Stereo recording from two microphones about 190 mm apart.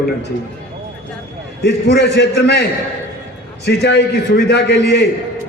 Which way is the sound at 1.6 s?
60° left (ahead or behind).